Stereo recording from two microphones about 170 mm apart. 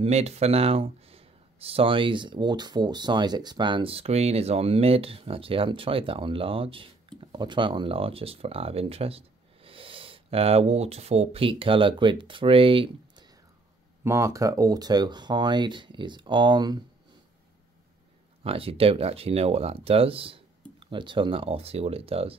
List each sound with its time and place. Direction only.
0.0 s speech: 40° right (ahead or behind)
14.0 s speech: 15° right (ahead or behind)
18.4 s speech: 35° right (ahead or behind)